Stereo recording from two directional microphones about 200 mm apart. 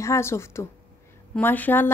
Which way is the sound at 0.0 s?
15° left (ahead or behind).